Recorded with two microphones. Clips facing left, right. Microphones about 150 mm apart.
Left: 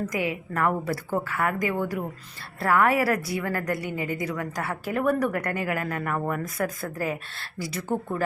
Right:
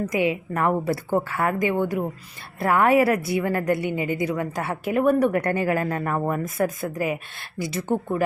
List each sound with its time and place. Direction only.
0.1 s a woman's voice: 20° right (ahead or behind)